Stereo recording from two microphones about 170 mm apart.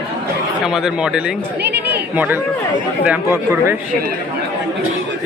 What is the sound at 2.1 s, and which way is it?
Speech, 10° right (ahead or behind).